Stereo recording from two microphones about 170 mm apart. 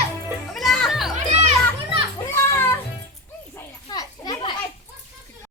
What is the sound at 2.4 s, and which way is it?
Music, 15° left (ahead or behind).